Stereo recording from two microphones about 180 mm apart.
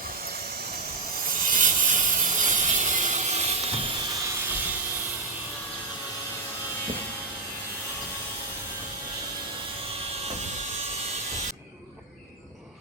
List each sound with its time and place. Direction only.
1.5 s wood: 45° right (ahead or behind)
2.4 s mechanisms: 45° right (ahead or behind)